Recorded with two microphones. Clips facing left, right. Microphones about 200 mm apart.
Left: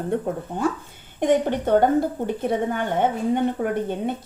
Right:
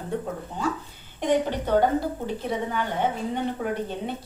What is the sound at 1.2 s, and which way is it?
Speech, 50° left (ahead or behind).